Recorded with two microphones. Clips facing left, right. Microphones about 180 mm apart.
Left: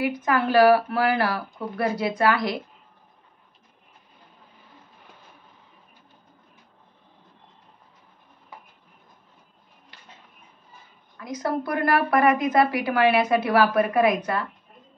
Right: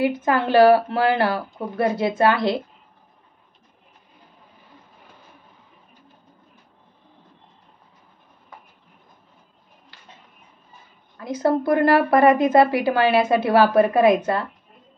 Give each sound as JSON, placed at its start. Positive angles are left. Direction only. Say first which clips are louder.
{"t": 0.0, "sound": "a woman's voice", "louder": "right 3 dB", "side_deg": -25}
{"t": 11.1, "sound": "a woman's voice", "louder": "right 6 dB", "side_deg": -30}